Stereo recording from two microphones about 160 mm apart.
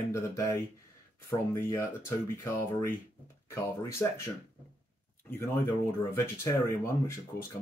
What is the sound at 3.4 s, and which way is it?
Speech, 15° left (ahead or behind).